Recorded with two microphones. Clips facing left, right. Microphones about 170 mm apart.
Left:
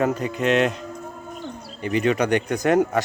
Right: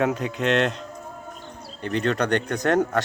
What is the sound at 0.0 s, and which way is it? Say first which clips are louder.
Speech: left 1 dB; centre (ahead or behind).